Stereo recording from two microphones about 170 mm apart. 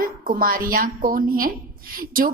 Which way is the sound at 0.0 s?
55° right (ahead or behind).